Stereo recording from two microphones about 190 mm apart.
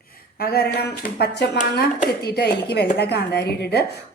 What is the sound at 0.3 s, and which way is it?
Speech, 55° left (ahead or behind).